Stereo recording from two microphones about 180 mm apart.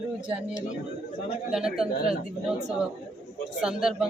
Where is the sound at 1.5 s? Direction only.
5° right (ahead or behind).